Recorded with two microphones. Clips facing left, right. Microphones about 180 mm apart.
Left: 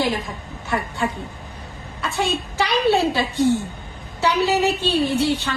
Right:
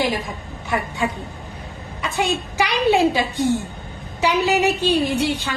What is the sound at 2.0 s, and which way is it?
A woman's voice, 15° right (ahead or behind).